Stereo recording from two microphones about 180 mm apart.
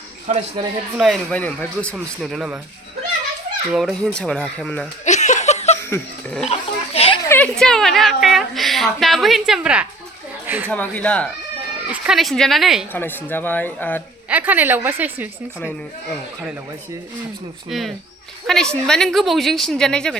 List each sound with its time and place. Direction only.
0.3 s speech: 30° right (ahead or behind)
0.9 s a woman's voice: centre (ahead or behind)
3.7 s a woman's voice: centre (ahead or behind)
5.0 s laughter: 40° left (ahead or behind)
6.4 s a sound: 35° left (ahead or behind)
7.3 s a sound: 10° left (ahead or behind)
7.6 s a woman's voice: 5° left (ahead or behind)
10.4 s a sound: 10° right (ahead or behind)
10.7 s speech: 10° left (ahead or behind)
11.9 s a woman's voice: 5° right (ahead or behind)
12.9 s speech: 10° left (ahead or behind)
14.3 s a woman's voice: 10° right (ahead or behind)
17.7 s a woman's voice: centre (ahead or behind)